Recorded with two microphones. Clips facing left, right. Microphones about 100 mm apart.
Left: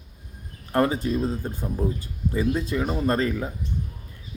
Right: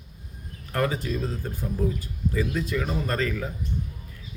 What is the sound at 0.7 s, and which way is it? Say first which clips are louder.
A man's voice: left 4 dB; 25° left (ahead or behind).